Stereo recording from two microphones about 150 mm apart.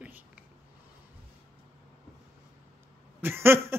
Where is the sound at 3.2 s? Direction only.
15° right (ahead or behind).